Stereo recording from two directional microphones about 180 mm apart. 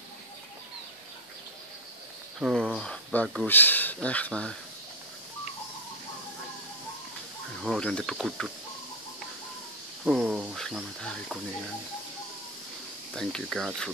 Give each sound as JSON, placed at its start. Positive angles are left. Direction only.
{"t": 2.4, "sound": "speech", "side_deg": -5}
{"t": 7.6, "sound": "speech", "side_deg": 0}
{"t": 10.0, "sound": "speech", "side_deg": 0}
{"t": 13.1, "sound": "speech", "side_deg": 5}